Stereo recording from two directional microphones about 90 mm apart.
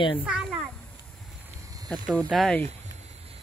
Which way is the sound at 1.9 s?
10° left (ahead or behind).